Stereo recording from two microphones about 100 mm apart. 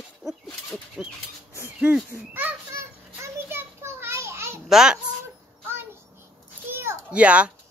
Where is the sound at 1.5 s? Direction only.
20° right (ahead or behind).